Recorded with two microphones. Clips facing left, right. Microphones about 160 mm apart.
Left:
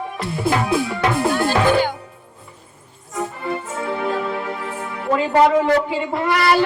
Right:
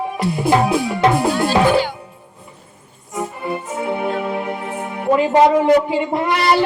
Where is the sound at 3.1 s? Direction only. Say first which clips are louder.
Right 1 dB; 15° right (ahead or behind).